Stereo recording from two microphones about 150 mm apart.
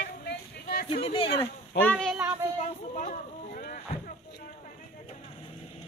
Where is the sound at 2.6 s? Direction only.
60° left (ahead or behind).